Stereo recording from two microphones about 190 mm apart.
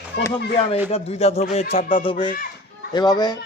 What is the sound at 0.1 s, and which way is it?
Speech, 60° left (ahead or behind).